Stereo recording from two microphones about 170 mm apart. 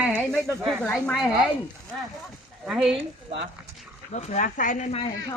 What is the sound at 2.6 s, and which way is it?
Speech, 5° right (ahead or behind).